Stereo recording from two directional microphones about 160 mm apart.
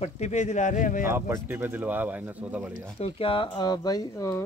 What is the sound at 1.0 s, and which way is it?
Speech, 15° right (ahead or behind).